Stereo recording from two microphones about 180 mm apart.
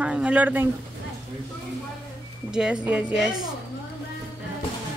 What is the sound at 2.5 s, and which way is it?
Speech, 5° right (ahead or behind).